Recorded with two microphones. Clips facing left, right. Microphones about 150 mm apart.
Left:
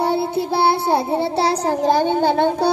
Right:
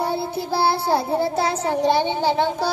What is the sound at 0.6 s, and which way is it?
Child singing, 25° left (ahead or behind).